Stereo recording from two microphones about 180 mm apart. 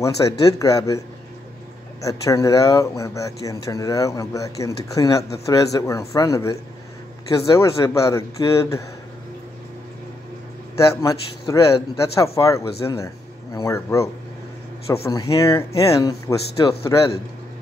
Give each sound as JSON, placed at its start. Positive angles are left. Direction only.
{"t": 0.0, "sound": "speech", "side_deg": 15}
{"t": 10.8, "sound": "speech", "side_deg": 15}